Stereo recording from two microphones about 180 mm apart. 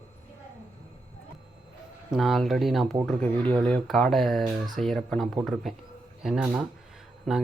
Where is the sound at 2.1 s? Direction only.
Centre (ahead or behind).